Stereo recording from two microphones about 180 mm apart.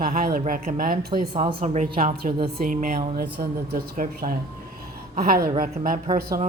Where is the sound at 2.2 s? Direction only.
45° right (ahead or behind).